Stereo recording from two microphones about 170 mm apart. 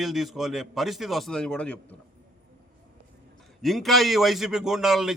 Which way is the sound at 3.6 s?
Centre (ahead or behind).